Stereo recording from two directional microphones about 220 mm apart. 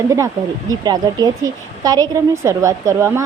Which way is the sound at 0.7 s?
20° right (ahead or behind).